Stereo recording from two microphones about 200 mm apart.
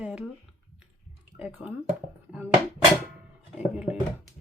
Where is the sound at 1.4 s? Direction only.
5° right (ahead or behind).